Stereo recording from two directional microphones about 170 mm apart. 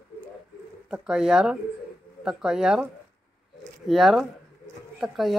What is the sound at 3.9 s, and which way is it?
Speech, centre (ahead or behind).